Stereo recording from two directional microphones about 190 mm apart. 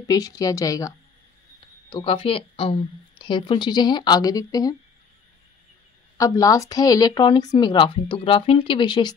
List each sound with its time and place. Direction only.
0.0 s a woman's voice: 20° left (ahead or behind)
1.9 s a woman's voice: 25° left (ahead or behind)
6.1 s a woman's voice: 20° left (ahead or behind)